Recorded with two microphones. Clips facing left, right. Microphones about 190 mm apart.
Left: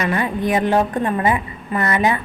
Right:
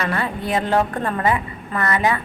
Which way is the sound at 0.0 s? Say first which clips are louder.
Left 4 dB; 20° left (ahead or behind).